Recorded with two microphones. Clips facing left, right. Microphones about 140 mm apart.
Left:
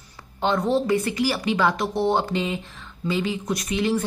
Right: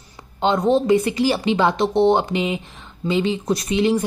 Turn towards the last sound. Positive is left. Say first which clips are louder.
# right 5 dB
turn(degrees=-20)  # may be behind; listen again after turning